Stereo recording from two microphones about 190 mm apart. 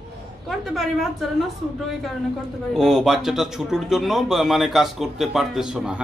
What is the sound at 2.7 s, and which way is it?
Speech, centre (ahead or behind).